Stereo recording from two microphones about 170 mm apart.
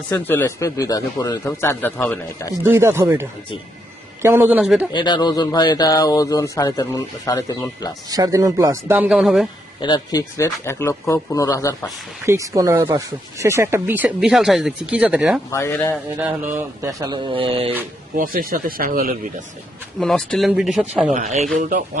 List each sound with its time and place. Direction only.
0.1 s speech: 10° left (ahead or behind)
2.6 s speech: 15° right (ahead or behind)
4.9 s speech: 25° left (ahead or behind)
8.1 s speech: 20° right (ahead or behind); by 9.5 s centre (ahead or behind)
9.8 s speech: 25° left (ahead or behind)
12.2 s speech: 15° right (ahead or behind)
15.5 s speech: 15° left (ahead or behind)
16.2 s speech: 10° right (ahead or behind)
17.3 s mantra: 30° right (ahead or behind)
18.2 s speech: 55° right (ahead or behind)
20.0 s speech: 5° left (ahead or behind)
21.1 s speech: 45° right (ahead or behind)